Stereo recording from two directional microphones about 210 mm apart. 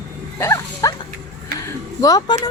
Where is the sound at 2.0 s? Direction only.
15° left (ahead or behind).